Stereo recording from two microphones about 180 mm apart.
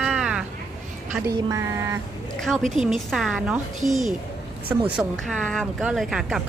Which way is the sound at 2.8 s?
Centre (ahead or behind).